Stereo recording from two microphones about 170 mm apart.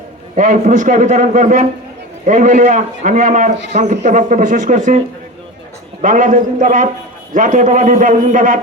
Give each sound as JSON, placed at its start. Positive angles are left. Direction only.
{"t": 0.3, "sound": "speech", "side_deg": -50}